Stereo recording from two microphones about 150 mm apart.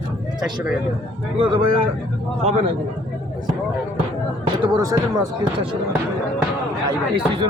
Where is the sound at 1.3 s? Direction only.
35° right (ahead or behind).